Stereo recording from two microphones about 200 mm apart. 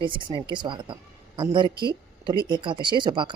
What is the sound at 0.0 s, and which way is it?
Speech, 25° right (ahead or behind).